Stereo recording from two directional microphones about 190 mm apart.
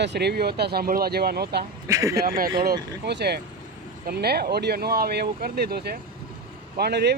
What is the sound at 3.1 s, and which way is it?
Speech, 60° right (ahead or behind).